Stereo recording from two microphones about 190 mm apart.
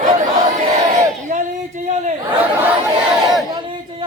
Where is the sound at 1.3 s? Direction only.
40° right (ahead or behind).